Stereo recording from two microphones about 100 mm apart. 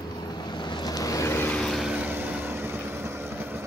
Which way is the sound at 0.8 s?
35° left (ahead or behind).